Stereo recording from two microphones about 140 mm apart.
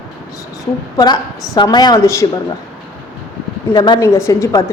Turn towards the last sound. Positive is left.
turn(degrees=20)  # may be behind; listen again after turning